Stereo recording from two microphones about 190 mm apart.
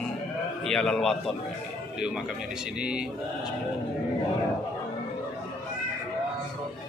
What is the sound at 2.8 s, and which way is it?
Speech, 5° right (ahead or behind).